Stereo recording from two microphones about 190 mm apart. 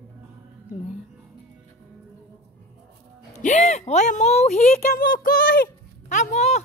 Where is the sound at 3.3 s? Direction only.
40° left (ahead or behind).